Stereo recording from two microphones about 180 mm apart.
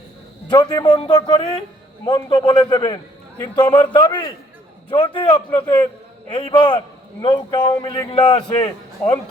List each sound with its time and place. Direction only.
0.5 s a man's voice: 25° left (ahead or behind)
5.6 s a man's voice: 10° left (ahead or behind)
6.3 s a man's voice: 25° left (ahead or behind)